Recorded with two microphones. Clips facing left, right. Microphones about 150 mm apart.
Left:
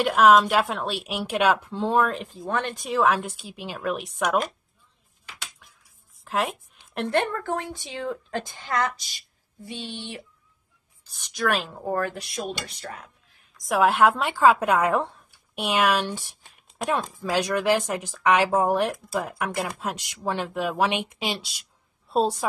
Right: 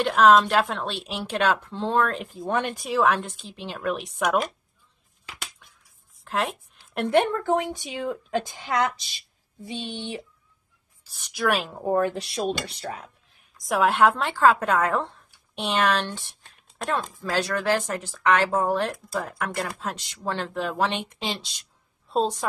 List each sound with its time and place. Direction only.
0.0 s speech: 5° left (ahead or behind)
2.4 s speech: 15° right (ahead or behind)
5.6 s finger snapping: 5° left (ahead or behind)
6.2 s a sound: centre (ahead or behind)
7.1 s a woman's voice: 15° right (ahead or behind)
11.1 s a woman's voice: 5° right (ahead or behind); by 12.4 s 30° right (ahead or behind)
13.6 s speech: centre (ahead or behind)